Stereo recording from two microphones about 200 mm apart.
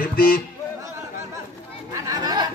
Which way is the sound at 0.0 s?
45° left (ahead or behind).